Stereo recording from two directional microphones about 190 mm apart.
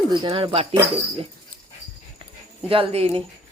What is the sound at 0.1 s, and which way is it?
Speech, 25° right (ahead or behind).